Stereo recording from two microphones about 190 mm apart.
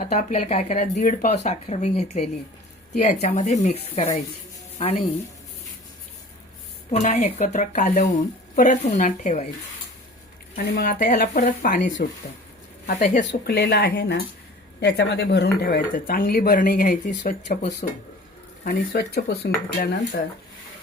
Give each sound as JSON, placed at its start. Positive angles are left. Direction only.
{"t": 0.0, "sound": "speech", "side_deg": 40}
{"t": 6.9, "sound": "speech", "side_deg": 35}
{"t": 10.6, "sound": "speech", "side_deg": 55}